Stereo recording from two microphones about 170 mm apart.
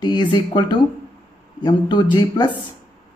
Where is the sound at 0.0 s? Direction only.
25° left (ahead or behind).